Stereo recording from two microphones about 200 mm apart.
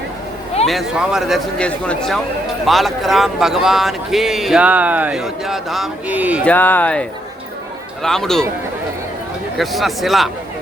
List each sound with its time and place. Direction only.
0.7 s speech: centre (ahead or behind)
6.4 s speech: 10° left (ahead or behind)
9.6 s speech: centre (ahead or behind)